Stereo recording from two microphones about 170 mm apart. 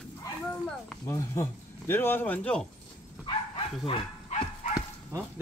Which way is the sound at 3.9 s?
35° left (ahead or behind).